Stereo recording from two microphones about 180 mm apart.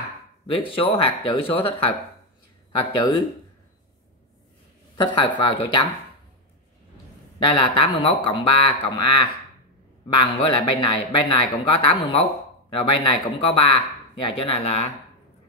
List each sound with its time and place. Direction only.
0.6 s a man's voice: 30° left (ahead or behind)
4.9 s a man's voice: 25° left (ahead or behind)
7.4 s a man's voice: 30° left (ahead or behind)